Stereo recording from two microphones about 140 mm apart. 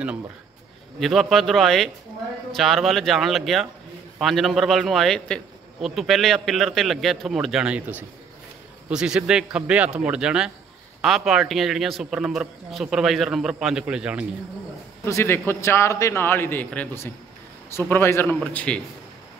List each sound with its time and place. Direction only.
0.9 s a man's voice: centre (ahead or behind)
15.0 s a man's voice: 20° left (ahead or behind)